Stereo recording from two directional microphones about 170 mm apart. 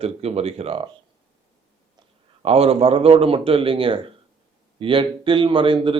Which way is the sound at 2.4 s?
35° right (ahead or behind).